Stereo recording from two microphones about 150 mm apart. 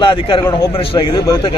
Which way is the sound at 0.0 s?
35° left (ahead or behind).